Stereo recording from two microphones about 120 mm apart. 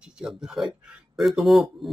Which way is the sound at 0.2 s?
5° right (ahead or behind).